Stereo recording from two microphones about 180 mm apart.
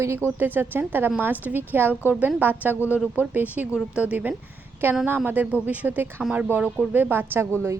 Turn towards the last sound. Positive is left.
turn(degrees=-10)  # may be behind; listen again after turning